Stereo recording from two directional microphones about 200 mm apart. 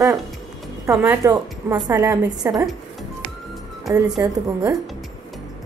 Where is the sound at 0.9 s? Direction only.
10° right (ahead or behind).